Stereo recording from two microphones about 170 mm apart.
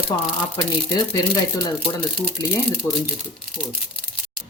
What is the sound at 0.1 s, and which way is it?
Speech, 25° left (ahead or behind).